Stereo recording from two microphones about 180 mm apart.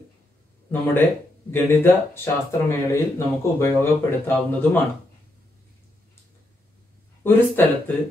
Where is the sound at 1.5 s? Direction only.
15° left (ahead or behind).